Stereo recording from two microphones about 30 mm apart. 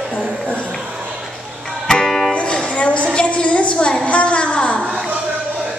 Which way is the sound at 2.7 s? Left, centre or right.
Left.